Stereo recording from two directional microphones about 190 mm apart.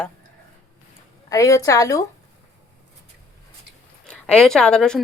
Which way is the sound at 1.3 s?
20° left (ahead or behind).